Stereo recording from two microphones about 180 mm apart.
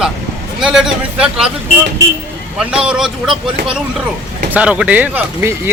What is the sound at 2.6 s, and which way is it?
Speech, 5° right (ahead or behind).